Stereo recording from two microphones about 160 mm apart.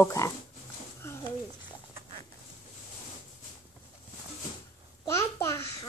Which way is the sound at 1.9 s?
35° right (ahead or behind).